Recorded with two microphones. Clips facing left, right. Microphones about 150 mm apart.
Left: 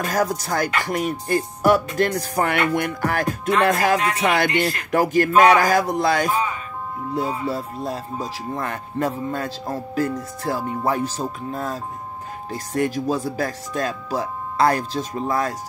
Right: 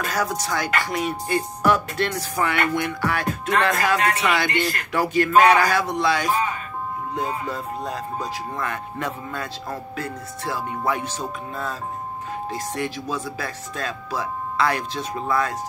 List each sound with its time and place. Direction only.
0.0 s music: 45° left (ahead or behind)
7.2 s speech: 35° left (ahead or behind)